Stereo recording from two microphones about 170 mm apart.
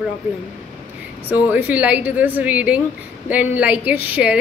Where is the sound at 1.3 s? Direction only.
10° right (ahead or behind).